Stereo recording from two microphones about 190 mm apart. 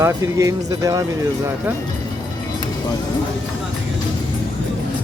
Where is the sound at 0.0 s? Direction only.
15° right (ahead or behind).